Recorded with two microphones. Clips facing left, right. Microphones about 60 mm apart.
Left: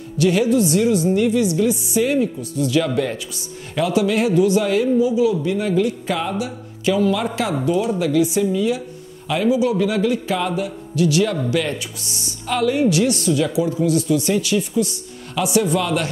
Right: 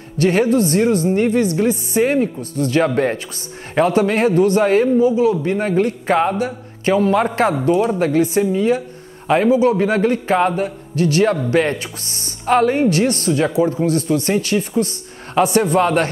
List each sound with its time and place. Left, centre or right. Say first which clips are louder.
0.2 s speech: right 2 dB; right